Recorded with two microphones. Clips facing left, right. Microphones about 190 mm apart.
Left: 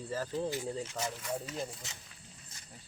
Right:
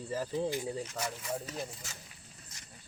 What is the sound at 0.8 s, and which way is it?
Speech, centre (ahead or behind).